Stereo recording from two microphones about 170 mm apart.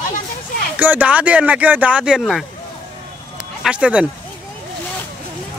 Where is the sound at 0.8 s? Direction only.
10° right (ahead or behind).